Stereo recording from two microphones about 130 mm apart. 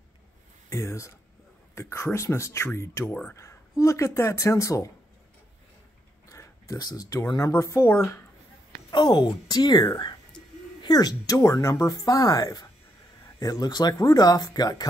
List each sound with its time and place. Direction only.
0.7 s speech: 20° left (ahead or behind)
3.1 s speech: 10° left (ahead or behind)
3.8 s speech: 25° left (ahead or behind)
6.3 s speech: 25° left (ahead or behind)
8.9 s a woman's voice: 35° left (ahead or behind)